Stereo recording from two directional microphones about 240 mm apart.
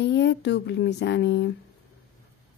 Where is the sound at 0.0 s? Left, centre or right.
Left.